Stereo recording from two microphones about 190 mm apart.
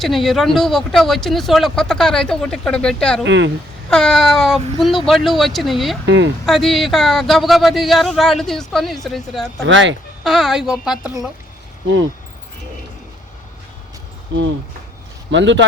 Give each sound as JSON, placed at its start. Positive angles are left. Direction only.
{"t": 0.0, "sound": "speech", "side_deg": 0}
{"t": 3.2, "sound": "a man's voice", "side_deg": -75}
{"t": 3.8, "sound": "speech", "side_deg": 5}
{"t": 6.1, "sound": "a man's voice", "side_deg": -75}
{"t": 6.4, "sound": "speech", "side_deg": 0}
{"t": 9.6, "sound": "speech", "side_deg": -80}
{"t": 10.2, "sound": "speech", "side_deg": 0}
{"t": 15.3, "sound": "a man's voice", "side_deg": -70}